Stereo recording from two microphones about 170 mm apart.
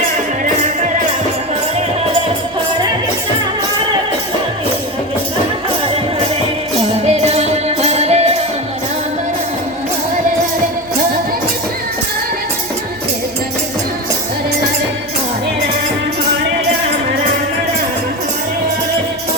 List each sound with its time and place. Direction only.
7.0 s music: 40° right (ahead or behind)